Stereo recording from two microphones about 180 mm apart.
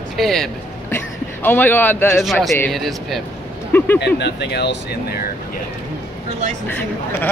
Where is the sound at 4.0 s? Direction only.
70° left (ahead or behind).